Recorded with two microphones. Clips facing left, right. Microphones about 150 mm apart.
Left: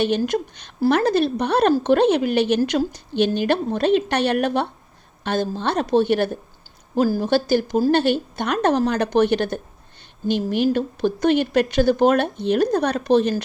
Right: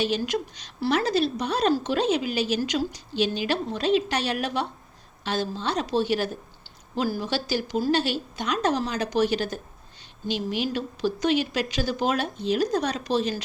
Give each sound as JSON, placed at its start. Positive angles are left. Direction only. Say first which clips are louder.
{"t": 0.0, "sound": "a woman's voice", "louder": "left 5 dB", "side_deg": 55}
{"t": 6.9, "sound": "a woman's voice", "louder": "left 8 dB", "side_deg": 45}